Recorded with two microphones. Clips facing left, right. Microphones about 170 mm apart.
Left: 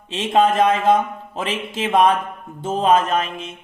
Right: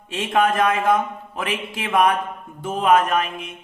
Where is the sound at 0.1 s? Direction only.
20° left (ahead or behind).